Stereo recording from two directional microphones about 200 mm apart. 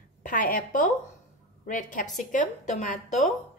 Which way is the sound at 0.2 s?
40° left (ahead or behind).